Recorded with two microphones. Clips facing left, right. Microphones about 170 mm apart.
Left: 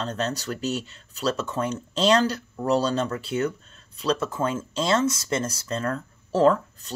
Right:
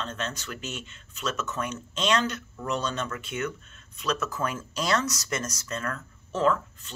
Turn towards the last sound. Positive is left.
turn(degrees=35)  # may be behind; listen again after turning